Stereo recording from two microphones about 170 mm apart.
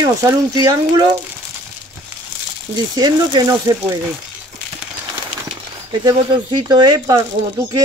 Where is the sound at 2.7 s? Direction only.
25° right (ahead or behind).